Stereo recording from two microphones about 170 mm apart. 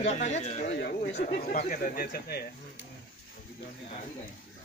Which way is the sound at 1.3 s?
50° left (ahead or behind).